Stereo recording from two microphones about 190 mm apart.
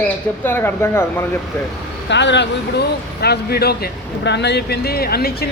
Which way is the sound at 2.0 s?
65° left (ahead or behind).